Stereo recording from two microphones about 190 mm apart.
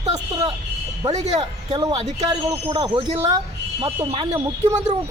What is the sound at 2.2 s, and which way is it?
Speech, 20° right (ahead or behind).